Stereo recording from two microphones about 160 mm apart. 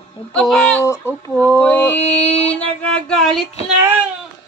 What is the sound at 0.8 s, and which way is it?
Speech, 15° left (ahead or behind).